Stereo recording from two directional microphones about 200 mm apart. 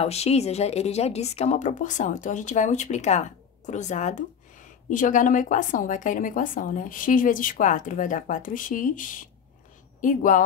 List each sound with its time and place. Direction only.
0.0 s a woman's voice: 30° left (ahead or behind)